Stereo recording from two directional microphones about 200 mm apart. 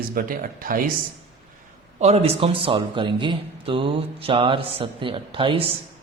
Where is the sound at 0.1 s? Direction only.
45° right (ahead or behind).